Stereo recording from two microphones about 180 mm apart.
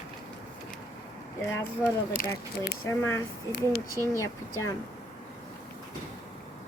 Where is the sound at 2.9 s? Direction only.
15° left (ahead or behind).